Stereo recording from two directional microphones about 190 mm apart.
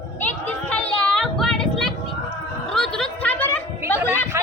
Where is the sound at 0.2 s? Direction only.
10° left (ahead or behind).